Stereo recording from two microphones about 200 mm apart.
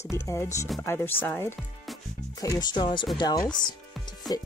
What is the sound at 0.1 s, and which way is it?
Speech, 15° left (ahead or behind).